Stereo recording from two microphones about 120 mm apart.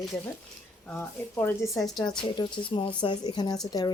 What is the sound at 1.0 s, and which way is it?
Speech, 15° left (ahead or behind).